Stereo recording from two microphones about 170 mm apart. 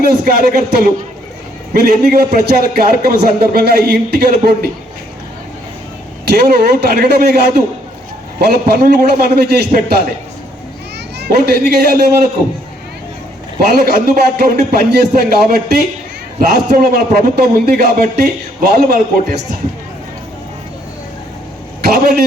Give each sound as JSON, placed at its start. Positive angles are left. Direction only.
{"t": 0.0, "sound": "a man's voice", "side_deg": -65}
{"t": 6.2, "sound": "a man's voice", "side_deg": -70}
{"t": 11.2, "sound": "a man's voice", "side_deg": -65}
{"t": 13.7, "sound": "a man's voice", "side_deg": -65}
{"t": 21.8, "sound": "a sound", "side_deg": -60}